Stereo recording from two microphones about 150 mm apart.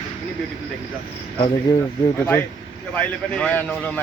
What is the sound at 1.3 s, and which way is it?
Speech, 35° left (ahead or behind).